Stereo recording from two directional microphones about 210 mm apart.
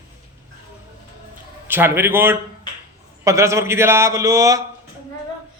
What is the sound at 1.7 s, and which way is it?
Speech, 10° right (ahead or behind).